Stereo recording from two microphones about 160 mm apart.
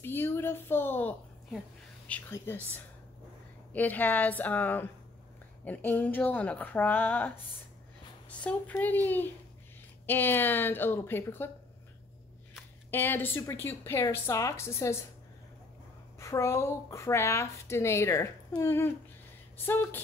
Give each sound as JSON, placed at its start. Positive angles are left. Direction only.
{"t": 0.0, "sound": "a woman's voice", "side_deg": 15}
{"t": 2.3, "sound": "a woman's voice", "side_deg": 15}
{"t": 8.5, "sound": "a woman's voice", "side_deg": 10}
{"t": 12.9, "sound": "a woman's voice", "side_deg": 15}
{"t": 16.2, "sound": "a woman's voice", "side_deg": 20}